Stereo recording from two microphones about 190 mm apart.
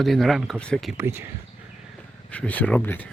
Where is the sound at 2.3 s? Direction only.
5° left (ahead or behind).